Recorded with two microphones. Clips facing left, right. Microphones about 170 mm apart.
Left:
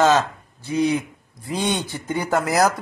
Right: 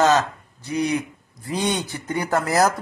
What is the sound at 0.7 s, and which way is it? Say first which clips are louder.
Speech: left 2 dB; 25° left (ahead or behind).